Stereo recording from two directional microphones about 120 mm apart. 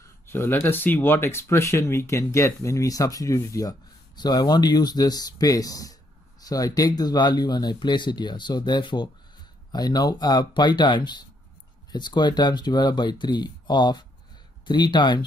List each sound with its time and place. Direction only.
0.0 s speech: 20° left (ahead or behind); by 15.2 s 40° left (ahead or behind)